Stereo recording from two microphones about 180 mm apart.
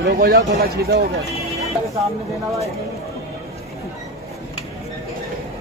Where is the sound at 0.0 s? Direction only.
70° right (ahead or behind).